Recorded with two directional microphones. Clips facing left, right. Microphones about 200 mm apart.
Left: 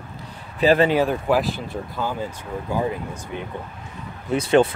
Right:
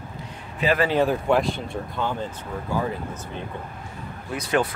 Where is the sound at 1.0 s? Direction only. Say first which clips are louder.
Even; centre (ahead or behind).